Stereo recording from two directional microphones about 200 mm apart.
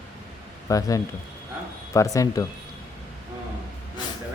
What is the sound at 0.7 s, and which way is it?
A man's voice, 15° left (ahead or behind).